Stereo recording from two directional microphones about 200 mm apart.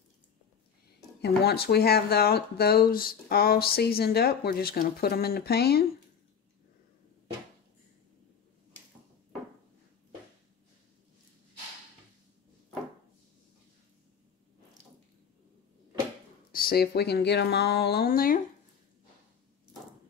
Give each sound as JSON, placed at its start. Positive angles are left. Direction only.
{"t": 1.2, "sound": "speech", "side_deg": 50}
{"t": 16.5, "sound": "speech", "side_deg": 50}